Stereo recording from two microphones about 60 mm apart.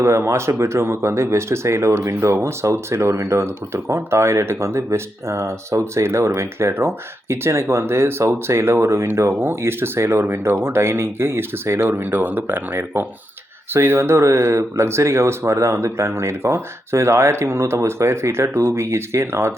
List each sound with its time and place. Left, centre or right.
0.0 s speech: right